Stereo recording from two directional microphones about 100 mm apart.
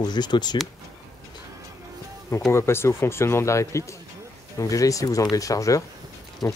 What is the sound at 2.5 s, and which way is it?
Speech, 25° left (ahead or behind).